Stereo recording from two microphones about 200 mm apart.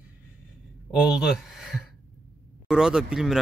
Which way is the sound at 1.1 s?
Centre (ahead or behind).